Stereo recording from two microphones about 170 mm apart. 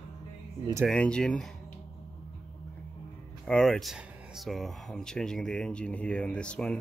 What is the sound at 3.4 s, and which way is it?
Speech, 5° left (ahead or behind).